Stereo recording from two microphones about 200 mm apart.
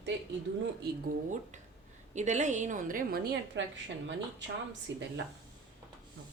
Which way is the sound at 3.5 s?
65° right (ahead or behind).